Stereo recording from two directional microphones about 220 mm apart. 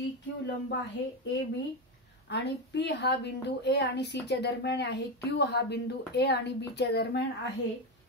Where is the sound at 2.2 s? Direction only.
50° left (ahead or behind).